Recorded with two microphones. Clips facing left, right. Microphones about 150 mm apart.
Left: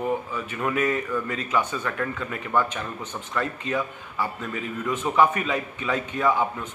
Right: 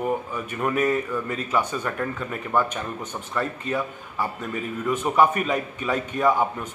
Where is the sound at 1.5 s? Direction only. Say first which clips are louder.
Right 1 dB; 15° right (ahead or behind).